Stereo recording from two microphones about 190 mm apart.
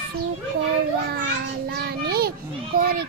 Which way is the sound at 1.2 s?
60° right (ahead or behind).